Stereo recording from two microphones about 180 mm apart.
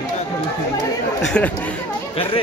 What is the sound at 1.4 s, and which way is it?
Speech, 10° left (ahead or behind).